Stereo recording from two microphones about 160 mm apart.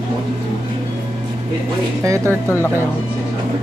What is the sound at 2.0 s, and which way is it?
Speech, 20° right (ahead or behind).